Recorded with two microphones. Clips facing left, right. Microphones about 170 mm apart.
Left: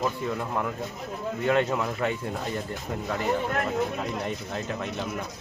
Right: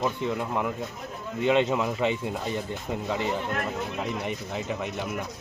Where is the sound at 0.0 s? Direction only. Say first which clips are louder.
Right 1 dB; 10° right (ahead or behind).